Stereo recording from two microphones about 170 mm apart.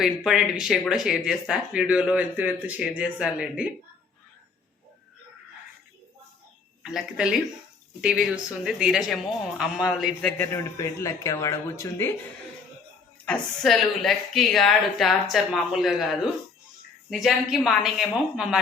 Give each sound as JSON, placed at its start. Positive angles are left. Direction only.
{"t": 0.3, "sound": "speech", "side_deg": -5}
{"t": 6.8, "sound": "speech", "side_deg": -5}
{"t": 8.6, "sound": "speech", "side_deg": -5}
{"t": 10.2, "sound": "a man's voice", "side_deg": 10}
{"t": 13.2, "sound": "speech", "side_deg": 5}